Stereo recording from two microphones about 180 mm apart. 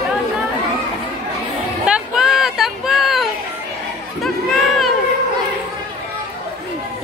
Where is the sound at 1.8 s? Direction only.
5° right (ahead or behind).